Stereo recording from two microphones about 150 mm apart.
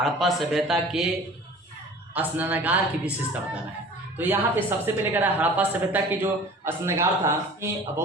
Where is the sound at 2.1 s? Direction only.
10° right (ahead or behind).